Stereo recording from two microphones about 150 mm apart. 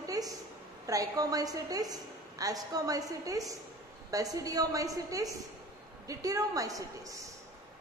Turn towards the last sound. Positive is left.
turn(degrees=-20)  # may be behind; listen again after turning